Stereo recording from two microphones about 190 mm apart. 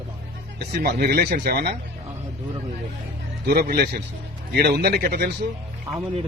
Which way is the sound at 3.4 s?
55° right (ahead or behind).